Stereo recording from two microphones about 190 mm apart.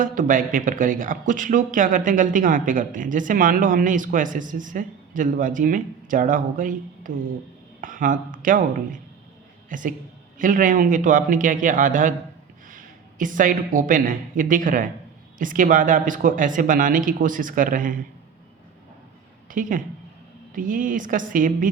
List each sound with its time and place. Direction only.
0.0 s speech: 45° right (ahead or behind)
19.5 s a woman's voice: 45° right (ahead or behind)